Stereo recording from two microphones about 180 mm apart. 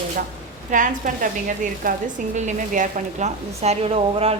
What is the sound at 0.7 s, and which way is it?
A woman's voice, 45° right (ahead or behind).